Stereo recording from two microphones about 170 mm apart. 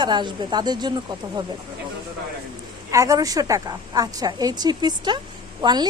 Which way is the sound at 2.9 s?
20° right (ahead or behind).